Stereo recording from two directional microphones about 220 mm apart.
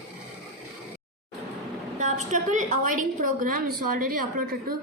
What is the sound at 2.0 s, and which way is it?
A woman's voice, 35° right (ahead or behind).